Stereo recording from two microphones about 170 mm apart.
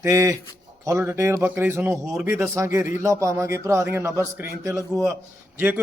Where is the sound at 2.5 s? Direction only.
15° right (ahead or behind).